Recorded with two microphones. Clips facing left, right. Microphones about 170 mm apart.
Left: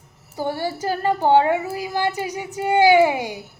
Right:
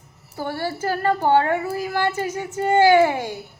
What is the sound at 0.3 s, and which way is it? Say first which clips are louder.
A woman's voice: left 2 dB; 15° left (ahead or behind).